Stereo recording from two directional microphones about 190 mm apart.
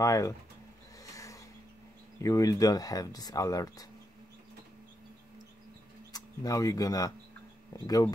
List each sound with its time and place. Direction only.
0.0 s speech: 15° left (ahead or behind)
1.1 s a sound: 15° left (ahead or behind)
2.1 s speech: 15° left (ahead or behind)
6.1 s speech: 20° left (ahead or behind)